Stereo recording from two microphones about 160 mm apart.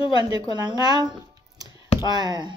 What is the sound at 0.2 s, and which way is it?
Speech, 25° right (ahead or behind).